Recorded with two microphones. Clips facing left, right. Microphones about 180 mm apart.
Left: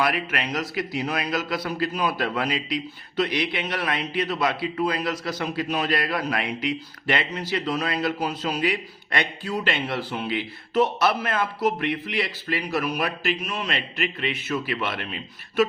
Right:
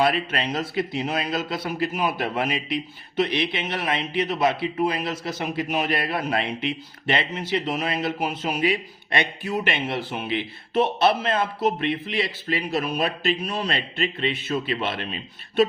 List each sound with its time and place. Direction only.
0.0 s a man's voice: 30° right (ahead or behind)